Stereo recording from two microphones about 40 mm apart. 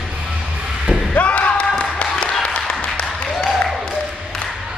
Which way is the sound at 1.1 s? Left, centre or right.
Left.